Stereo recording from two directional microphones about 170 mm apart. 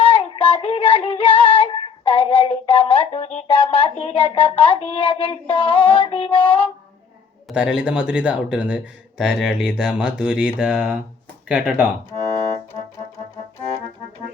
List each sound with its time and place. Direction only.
0.0 s synthetic singing: 30° left (ahead or behind)
7.4 s a man's voice: 5° right (ahead or behind)